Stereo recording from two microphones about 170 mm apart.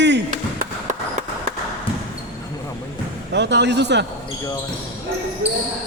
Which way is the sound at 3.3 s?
90° right.